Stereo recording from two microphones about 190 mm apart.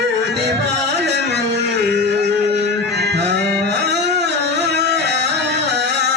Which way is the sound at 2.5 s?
65° right (ahead or behind).